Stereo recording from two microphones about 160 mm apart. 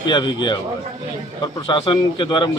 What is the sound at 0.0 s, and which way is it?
A man's voice, 30° left (ahead or behind).